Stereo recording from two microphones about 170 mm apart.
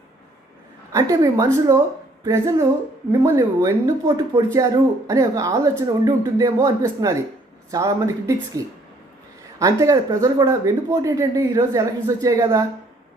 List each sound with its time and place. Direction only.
0.9 s speech: 20° right (ahead or behind)